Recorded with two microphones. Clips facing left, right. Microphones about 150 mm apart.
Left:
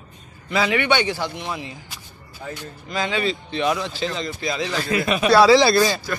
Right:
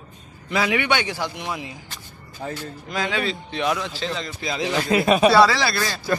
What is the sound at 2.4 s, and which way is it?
Speech, 45° right (ahead or behind).